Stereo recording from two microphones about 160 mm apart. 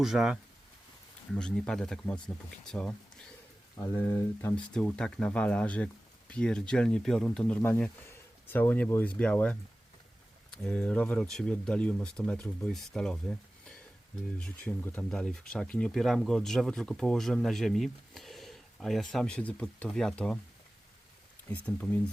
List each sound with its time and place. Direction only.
0.0 s speech: 5° right (ahead or behind)
3.8 s speech: 15° left (ahead or behind)